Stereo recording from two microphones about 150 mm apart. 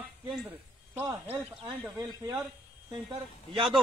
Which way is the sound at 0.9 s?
20° right (ahead or behind).